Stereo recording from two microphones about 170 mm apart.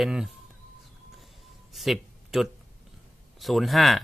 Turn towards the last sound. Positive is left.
turn(degrees=0)  # may be behind; listen again after turning